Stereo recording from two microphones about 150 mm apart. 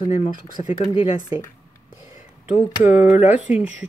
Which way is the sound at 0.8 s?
35° left (ahead or behind).